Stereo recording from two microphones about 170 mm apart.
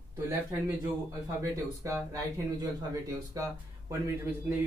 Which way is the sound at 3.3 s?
20° right (ahead or behind).